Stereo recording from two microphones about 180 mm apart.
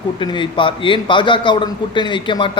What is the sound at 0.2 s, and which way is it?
A man's voice, 25° left (ahead or behind).